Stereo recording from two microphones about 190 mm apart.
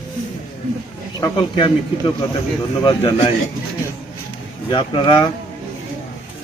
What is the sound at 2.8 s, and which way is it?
Speech, 25° left (ahead or behind).